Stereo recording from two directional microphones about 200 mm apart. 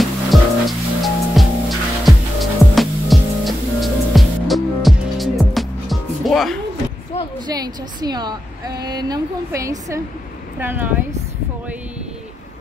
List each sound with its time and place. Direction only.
0.0 s music: centre (ahead or behind)
7.4 s a woman's voice: 20° right (ahead or behind)